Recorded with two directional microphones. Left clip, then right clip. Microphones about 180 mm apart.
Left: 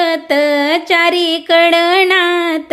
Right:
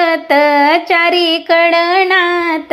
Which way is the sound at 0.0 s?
10° left (ahead or behind).